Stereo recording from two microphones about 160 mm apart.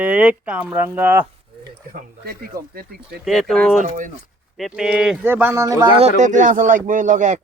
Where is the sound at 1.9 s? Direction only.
65° right (ahead or behind).